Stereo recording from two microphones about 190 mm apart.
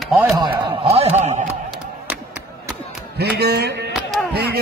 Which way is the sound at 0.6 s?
30° right (ahead or behind).